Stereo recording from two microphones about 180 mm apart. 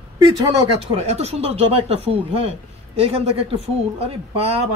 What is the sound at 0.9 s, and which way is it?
Speech, 35° right (ahead or behind).